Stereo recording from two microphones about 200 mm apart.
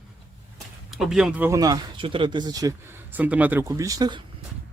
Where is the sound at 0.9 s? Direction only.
Centre (ahead or behind); by 2.7 s 20° right (ahead or behind).